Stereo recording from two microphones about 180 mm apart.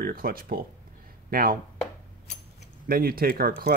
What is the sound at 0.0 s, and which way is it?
Speech, 55° right (ahead or behind).